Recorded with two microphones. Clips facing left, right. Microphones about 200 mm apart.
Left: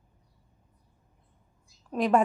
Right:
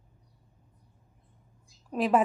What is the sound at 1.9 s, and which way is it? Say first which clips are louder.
Speech: left 1 dB; 5° right (ahead or behind).